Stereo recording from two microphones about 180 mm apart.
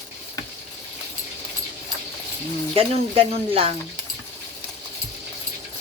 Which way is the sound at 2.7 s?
30° right (ahead or behind).